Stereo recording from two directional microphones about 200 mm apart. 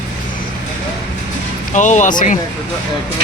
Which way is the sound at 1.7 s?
35° left (ahead or behind).